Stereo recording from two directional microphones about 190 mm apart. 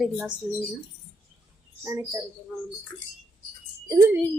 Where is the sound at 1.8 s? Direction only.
15° right (ahead or behind).